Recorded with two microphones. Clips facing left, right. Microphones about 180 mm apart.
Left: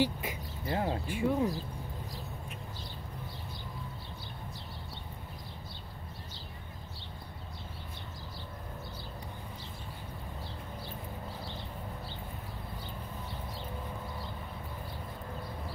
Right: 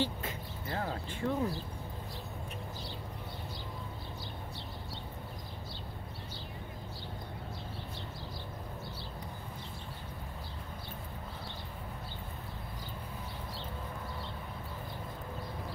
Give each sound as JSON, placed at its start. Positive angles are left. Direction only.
{"t": 0.0, "sound": "speech", "side_deg": 10}
{"t": 0.7, "sound": "a sound", "side_deg": 20}
{"t": 1.0, "sound": "speech", "side_deg": 10}